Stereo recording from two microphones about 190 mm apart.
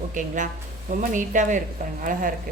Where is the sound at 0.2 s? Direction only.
40° right (ahead or behind).